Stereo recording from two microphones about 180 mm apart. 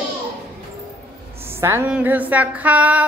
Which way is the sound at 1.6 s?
10° right (ahead or behind).